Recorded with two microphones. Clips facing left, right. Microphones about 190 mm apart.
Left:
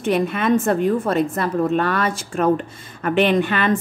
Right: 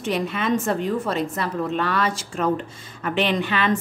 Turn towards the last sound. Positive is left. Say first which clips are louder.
# left 4 dB
turn(degrees=50)  # may be behind; listen again after turning